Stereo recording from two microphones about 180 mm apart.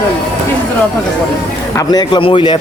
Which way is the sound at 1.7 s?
25° left (ahead or behind).